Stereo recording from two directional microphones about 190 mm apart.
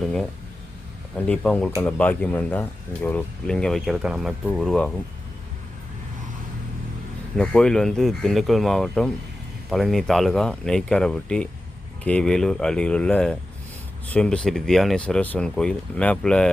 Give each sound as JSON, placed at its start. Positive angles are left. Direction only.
{"t": 0.0, "sound": "speech", "side_deg": 0}
{"t": 7.3, "sound": "speech", "side_deg": 5}